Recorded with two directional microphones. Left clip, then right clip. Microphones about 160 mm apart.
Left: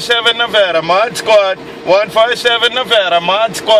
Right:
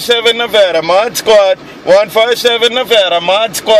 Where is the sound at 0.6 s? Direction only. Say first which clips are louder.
Right 2 dB; 40° right (ahead or behind).